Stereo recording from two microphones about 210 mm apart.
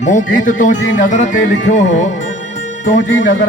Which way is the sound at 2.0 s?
35° left (ahead or behind).